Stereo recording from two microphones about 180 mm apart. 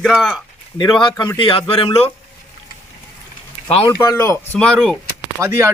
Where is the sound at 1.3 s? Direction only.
30° left (ahead or behind).